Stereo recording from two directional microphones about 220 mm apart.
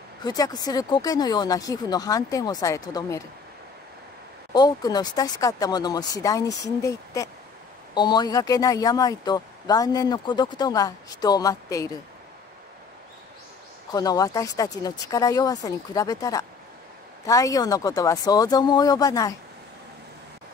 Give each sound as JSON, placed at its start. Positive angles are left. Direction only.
{"t": 0.2, "sound": "speech", "side_deg": 20}
{"t": 4.6, "sound": "speech", "side_deg": 15}
{"t": 13.9, "sound": "speech", "side_deg": 15}